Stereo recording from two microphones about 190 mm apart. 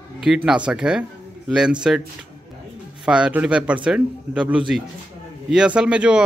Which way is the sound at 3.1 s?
5° right (ahead or behind).